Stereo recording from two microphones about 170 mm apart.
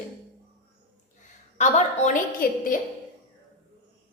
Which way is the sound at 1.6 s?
45° left (ahead or behind).